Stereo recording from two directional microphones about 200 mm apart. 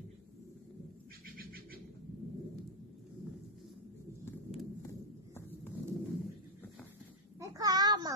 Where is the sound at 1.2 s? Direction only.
45° right (ahead or behind).